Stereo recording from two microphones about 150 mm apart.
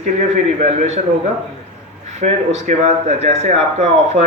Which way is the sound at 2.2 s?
50° right (ahead or behind).